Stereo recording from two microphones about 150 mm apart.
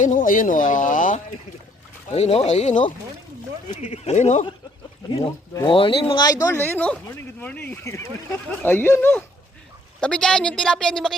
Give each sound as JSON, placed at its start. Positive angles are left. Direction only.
{"t": 0.0, "sound": "speech", "side_deg": 60}
{"t": 2.0, "sound": "speech", "side_deg": 45}
{"t": 5.6, "sound": "a woman's voice", "side_deg": 35}